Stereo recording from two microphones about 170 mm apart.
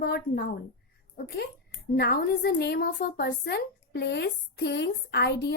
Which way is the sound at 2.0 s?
65° left (ahead or behind).